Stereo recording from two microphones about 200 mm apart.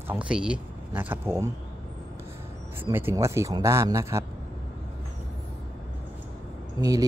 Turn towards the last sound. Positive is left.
turn(degrees=-15)  # may be behind; listen again after turning